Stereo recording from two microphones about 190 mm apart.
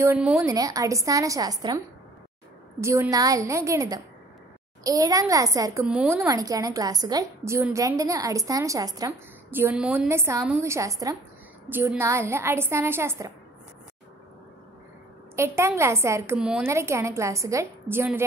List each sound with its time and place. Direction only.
0.0 s a woman's voice: 10° right (ahead or behind)
0.5 s a woman's voice: 20° right (ahead or behind)
2.8 s a woman's voice: 15° right (ahead or behind)
5.9 s speech: 5° right (ahead or behind)
6.1 s a woman's voice: 15° right (ahead or behind)
15.3 s a woman's voice: 15° right (ahead or behind)